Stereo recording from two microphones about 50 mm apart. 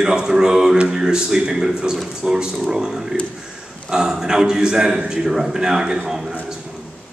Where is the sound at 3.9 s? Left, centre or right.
Centre.